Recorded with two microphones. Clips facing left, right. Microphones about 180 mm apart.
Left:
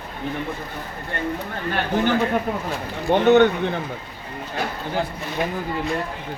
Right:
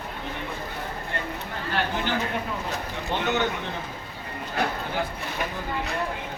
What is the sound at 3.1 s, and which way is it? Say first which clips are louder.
Speech: left 12 dB; 60° left (ahead or behind).